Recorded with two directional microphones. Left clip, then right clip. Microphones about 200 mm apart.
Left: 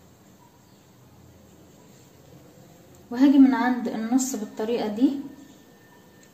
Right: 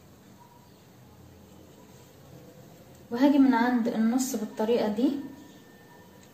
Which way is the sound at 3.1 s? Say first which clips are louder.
Left 4 dB; 35° left (ahead or behind).